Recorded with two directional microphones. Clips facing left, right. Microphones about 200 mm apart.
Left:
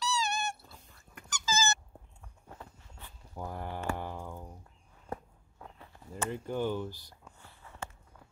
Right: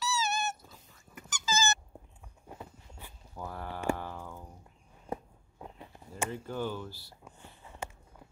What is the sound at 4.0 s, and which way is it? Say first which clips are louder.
Music: left 2 dB; 15° left (ahead or behind).